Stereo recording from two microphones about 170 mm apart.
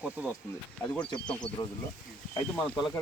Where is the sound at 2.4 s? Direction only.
10° left (ahead or behind).